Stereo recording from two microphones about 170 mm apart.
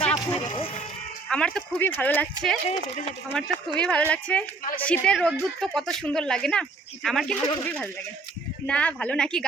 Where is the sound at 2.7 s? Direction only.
45° left (ahead or behind).